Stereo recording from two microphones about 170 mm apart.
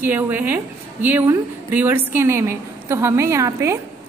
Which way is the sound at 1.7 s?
15° right (ahead or behind).